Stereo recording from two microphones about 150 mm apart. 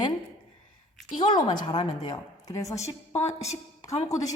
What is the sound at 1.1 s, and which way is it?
A woman's voice, 35° left (ahead or behind).